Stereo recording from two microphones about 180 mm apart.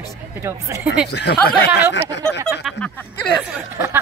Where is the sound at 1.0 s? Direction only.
70° left (ahead or behind).